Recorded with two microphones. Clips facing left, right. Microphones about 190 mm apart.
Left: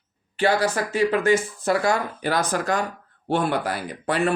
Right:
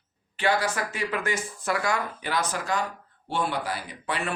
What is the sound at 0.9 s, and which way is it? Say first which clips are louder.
Speech: left 10 dB; 30° left (ahead or behind).